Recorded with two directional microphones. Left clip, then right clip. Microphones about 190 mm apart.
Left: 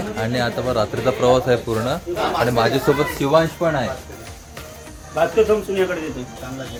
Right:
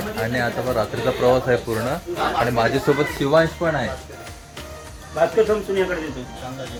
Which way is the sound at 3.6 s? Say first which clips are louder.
Left 2 dB; centre (ahead or behind).